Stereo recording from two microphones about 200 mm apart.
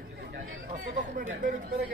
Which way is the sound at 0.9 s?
40° right (ahead or behind).